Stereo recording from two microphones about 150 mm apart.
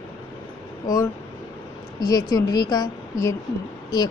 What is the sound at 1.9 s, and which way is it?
A woman's voice, 25° left (ahead or behind).